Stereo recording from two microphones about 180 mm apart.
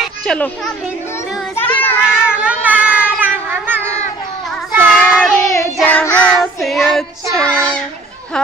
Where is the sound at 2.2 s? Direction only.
5° right (ahead or behind).